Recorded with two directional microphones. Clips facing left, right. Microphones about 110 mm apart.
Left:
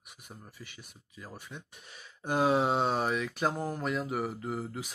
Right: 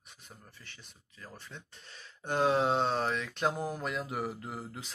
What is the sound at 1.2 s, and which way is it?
Speech, 10° left (ahead or behind).